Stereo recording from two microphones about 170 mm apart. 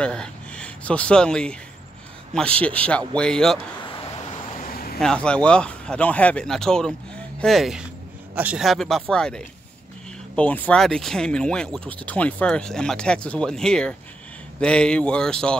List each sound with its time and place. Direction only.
0.0 s a man's voice: 5° left (ahead or behind)
4.6 s a sound: 60° left (ahead or behind)
5.0 s speech: 5° left (ahead or behind)